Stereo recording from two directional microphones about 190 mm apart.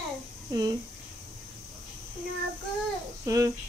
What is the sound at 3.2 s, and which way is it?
Speech, 15° right (ahead or behind).